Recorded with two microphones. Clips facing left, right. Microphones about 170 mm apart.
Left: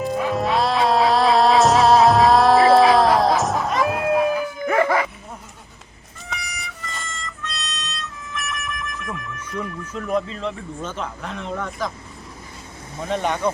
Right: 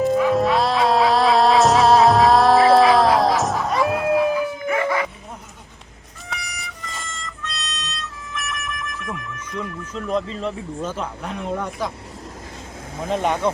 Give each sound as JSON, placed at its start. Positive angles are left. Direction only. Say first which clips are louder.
{"t": 0.0, "sound": "music", "louder": "right 5 dB", "side_deg": 0}
{"t": 4.7, "sound": "dog", "louder": "left 4 dB", "side_deg": 35}
{"t": 6.2, "sound": "music", "louder": "even", "side_deg": 0}
{"t": 9.4, "sound": "a sound", "louder": "even", "side_deg": 10}
{"t": 10.0, "sound": "speech", "louder": "even", "side_deg": 0}
{"t": 13.1, "sound": "speech", "louder": "right 1 dB", "side_deg": -5}